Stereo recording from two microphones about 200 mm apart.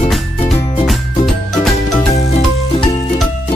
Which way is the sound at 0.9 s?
Centre (ahead or behind).